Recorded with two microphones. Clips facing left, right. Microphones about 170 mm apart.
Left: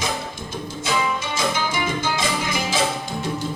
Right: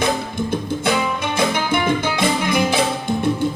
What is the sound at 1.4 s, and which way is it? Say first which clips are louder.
Music: right 6 dB; 60° right (ahead or behind).